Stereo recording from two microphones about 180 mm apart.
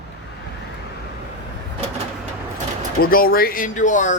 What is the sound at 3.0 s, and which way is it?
Speech, 55° left (ahead or behind).